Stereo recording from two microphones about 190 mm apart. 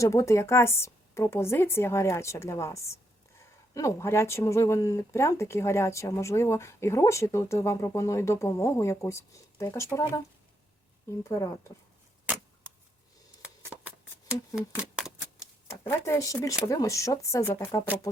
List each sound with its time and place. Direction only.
0.0 s speech: 15° left (ahead or behind)
12.2 s a sound: 10° right (ahead or behind)
14.5 s speech: 5° right (ahead or behind)
15.6 s speech: 15° left (ahead or behind)